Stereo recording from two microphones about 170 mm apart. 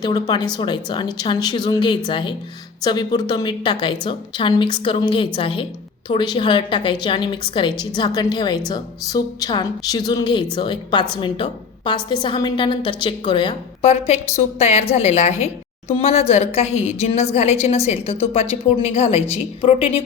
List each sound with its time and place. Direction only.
0.0 s a woman's voice: 25° left (ahead or behind)
13.8 s a woman's voice: 40° left (ahead or behind)